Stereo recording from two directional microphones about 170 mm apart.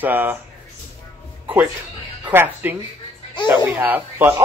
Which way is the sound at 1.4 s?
5° right (ahead or behind).